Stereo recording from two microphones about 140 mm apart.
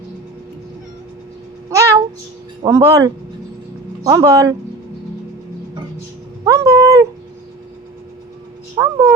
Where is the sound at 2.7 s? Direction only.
25° right (ahead or behind).